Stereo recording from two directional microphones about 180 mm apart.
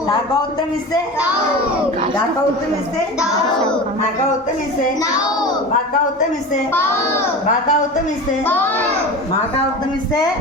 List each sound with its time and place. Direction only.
6.7 s a child's voice: 15° left (ahead or behind)
7.4 s a man's voice: 45° left (ahead or behind)
8.4 s a child's voice: 10° left (ahead or behind)